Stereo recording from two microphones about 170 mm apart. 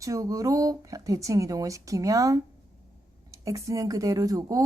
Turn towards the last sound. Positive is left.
turn(degrees=-20)  # may be behind; listen again after turning